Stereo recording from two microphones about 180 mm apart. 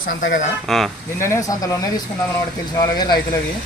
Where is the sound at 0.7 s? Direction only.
Centre (ahead or behind).